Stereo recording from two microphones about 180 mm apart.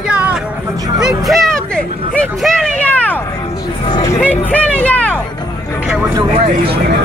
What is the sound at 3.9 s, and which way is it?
Hubbub, 20° left (ahead or behind).